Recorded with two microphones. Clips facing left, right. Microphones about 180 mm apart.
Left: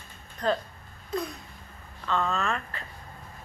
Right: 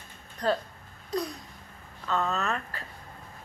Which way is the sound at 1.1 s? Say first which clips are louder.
Even; 35° right (ahead or behind).